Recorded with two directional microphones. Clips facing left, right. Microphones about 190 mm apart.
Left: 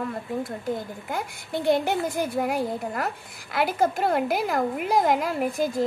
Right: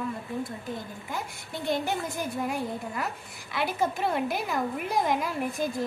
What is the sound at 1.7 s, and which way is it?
Speech, 85° left.